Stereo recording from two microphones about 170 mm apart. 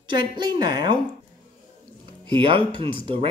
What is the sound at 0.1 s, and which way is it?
Speech, 25° right (ahead or behind).